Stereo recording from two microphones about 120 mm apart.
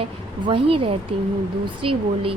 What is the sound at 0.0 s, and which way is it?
Speech, 45° right (ahead or behind).